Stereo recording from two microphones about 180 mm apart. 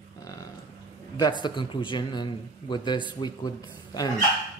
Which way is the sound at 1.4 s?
25° left (ahead or behind).